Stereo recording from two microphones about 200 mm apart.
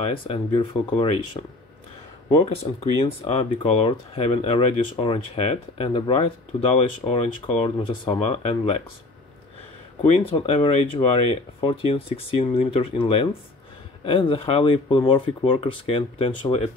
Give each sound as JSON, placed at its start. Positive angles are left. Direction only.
{"t": 0.0, "sound": "speech", "side_deg": 25}
{"t": 2.2, "sound": "speech", "side_deg": 30}
{"t": 10.0, "sound": "speech", "side_deg": 30}